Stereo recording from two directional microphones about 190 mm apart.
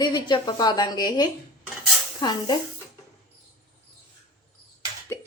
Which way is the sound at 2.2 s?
20° left (ahead or behind).